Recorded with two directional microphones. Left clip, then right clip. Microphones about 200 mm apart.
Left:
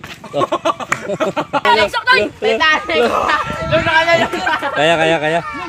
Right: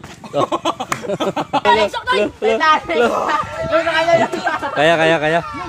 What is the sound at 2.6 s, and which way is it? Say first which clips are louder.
Speech: left 1 dB; 25° left (ahead or behind).